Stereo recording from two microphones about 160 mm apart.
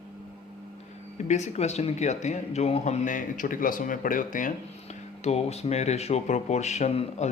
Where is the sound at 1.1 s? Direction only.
45° left (ahead or behind).